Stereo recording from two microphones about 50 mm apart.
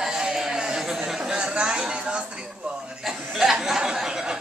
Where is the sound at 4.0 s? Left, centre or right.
Centre.